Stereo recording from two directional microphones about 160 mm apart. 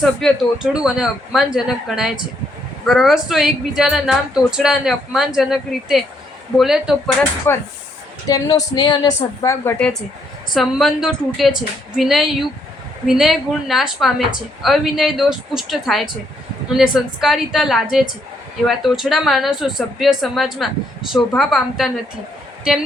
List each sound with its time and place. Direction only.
0.0 s speech: centre (ahead or behind)
7.5 s a woman's voice: 15° left (ahead or behind)
10.5 s speech: centre (ahead or behind)